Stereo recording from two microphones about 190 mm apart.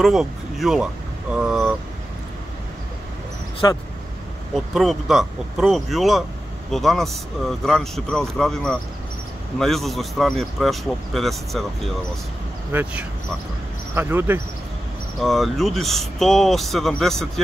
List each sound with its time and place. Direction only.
0.0 s speech: centre (ahead or behind)
1.3 s vehicle: 5° right (ahead or behind)
3.6 s speech: 20° left (ahead or behind)
4.6 s speech: centre (ahead or behind)
13.9 s speech: 10° right (ahead or behind)
15.1 s speech: centre (ahead or behind)